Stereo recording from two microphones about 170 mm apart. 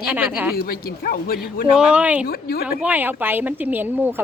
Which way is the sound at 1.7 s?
5° right (ahead or behind).